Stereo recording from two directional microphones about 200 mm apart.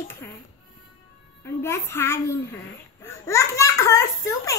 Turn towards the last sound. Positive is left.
turn(degrees=15)  # may be behind; listen again after turning